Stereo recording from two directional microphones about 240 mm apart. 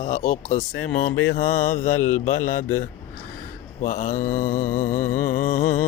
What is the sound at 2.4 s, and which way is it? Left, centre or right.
Speech, left.